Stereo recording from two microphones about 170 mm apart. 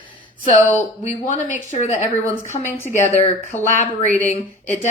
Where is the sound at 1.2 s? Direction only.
45° left (ahead or behind).